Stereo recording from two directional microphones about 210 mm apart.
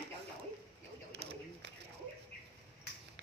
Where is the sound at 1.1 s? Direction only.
50° right (ahead or behind).